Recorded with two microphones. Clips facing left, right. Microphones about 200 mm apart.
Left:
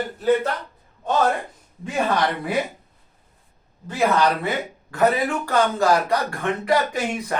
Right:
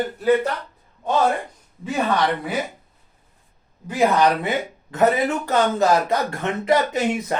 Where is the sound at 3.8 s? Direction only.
15° right (ahead or behind).